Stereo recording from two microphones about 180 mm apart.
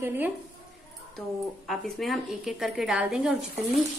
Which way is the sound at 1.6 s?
Centre (ahead or behind).